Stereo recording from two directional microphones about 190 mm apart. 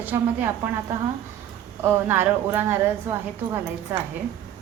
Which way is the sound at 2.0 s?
10° right (ahead or behind).